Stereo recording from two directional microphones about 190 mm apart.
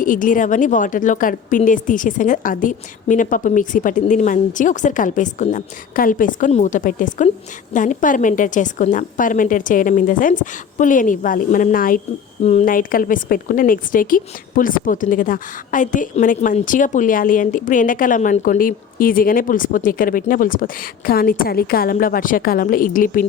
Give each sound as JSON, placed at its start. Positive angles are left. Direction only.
{"t": 0.0, "sound": "a woman's voice", "side_deg": 45}
{"t": 12.4, "sound": "a woman's voice", "side_deg": 35}